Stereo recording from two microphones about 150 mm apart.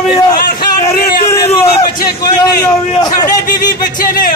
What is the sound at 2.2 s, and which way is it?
A man's voice, 25° left (ahead or behind).